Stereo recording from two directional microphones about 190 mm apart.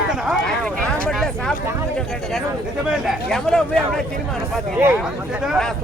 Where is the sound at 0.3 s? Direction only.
5° left (ahead or behind).